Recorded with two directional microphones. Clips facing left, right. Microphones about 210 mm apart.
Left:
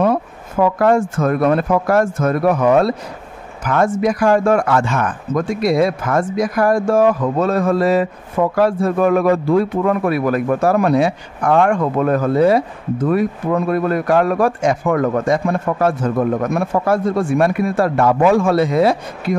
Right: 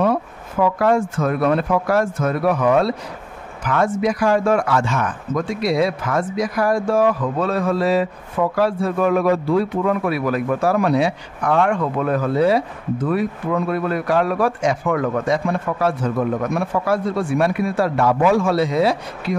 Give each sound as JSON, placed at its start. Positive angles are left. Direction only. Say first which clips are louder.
{"t": 0.6, "sound": "speech", "louder": "left 3 dB", "side_deg": 45}